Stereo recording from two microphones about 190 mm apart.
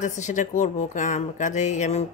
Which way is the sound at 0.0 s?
40° left (ahead or behind).